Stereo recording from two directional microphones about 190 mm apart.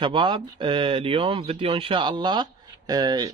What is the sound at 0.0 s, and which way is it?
Speech, 25° right (ahead or behind).